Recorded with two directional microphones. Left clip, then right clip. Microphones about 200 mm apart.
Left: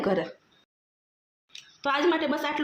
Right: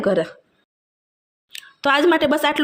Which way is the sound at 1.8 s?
35° right (ahead or behind).